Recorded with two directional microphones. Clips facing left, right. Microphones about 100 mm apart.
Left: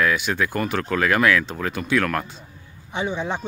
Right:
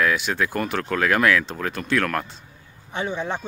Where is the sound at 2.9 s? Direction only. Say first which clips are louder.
Left 1 dB; 15° left (ahead or behind).